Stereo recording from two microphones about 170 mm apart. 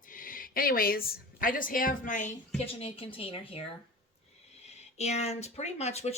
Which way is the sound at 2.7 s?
35° left (ahead or behind).